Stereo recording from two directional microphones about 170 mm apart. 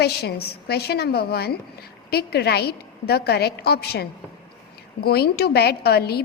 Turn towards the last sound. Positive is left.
turn(degrees=70)  # may be behind; listen again after turning